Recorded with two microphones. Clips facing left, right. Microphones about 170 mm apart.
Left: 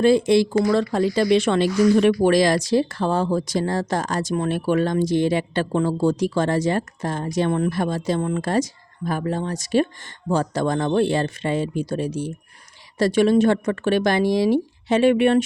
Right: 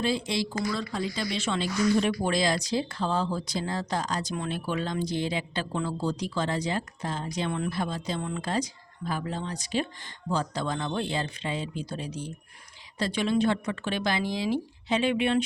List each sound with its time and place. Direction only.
0.0 s speech: 55° left (ahead or behind)
0.6 s speech: 65° left (ahead or behind)
3.8 s speech: 50° left (ahead or behind)
4.5 s speech: 65° left (ahead or behind)
6.4 s speech: 50° left (ahead or behind)
7.8 s speech: 70° left (ahead or behind)
9.0 s speech: 50° left (ahead or behind)
13.1 s speech: 45° left (ahead or behind)